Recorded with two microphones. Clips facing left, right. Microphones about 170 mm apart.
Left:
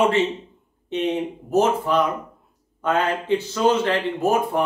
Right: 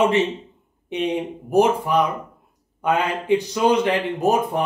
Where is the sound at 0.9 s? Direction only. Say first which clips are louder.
Even; 15° right (ahead or behind).